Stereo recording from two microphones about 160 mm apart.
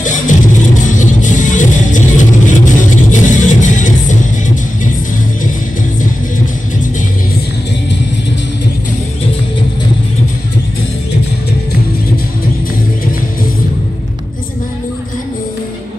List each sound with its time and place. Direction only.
0.0 s music: 55° left (ahead or behind)